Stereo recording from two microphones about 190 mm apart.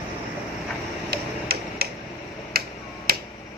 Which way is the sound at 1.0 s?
55° right (ahead or behind).